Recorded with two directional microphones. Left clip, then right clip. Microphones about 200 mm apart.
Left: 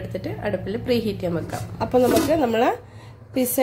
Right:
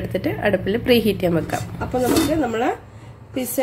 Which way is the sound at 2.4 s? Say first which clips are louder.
Left 1 dB; 50° left (ahead or behind).